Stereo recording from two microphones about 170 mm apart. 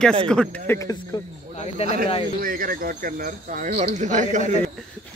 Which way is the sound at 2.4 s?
55° right (ahead or behind).